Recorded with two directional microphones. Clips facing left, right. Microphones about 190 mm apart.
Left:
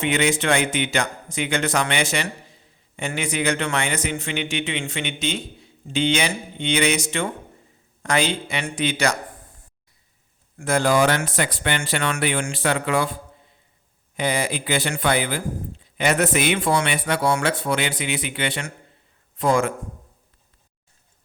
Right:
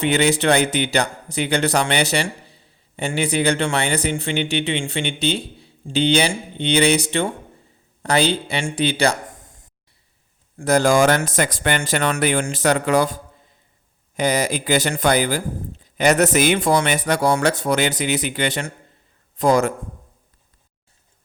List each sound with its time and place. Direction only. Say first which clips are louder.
0.0 s speech: right 4 dB; 35° right (ahead or behind)
10.6 s speech: right 3 dB; 40° right (ahead or behind)
14.2 s speech: right 4 dB; 40° right (ahead or behind)